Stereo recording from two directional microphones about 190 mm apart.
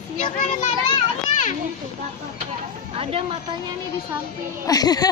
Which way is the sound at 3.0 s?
30° right (ahead or behind).